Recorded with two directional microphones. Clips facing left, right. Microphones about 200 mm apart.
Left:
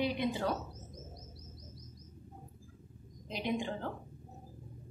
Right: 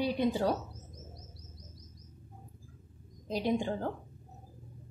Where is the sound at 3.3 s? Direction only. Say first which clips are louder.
Right 5 dB; 40° right (ahead or behind).